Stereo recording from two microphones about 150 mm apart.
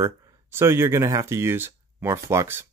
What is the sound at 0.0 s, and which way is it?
Speech, 15° right (ahead or behind).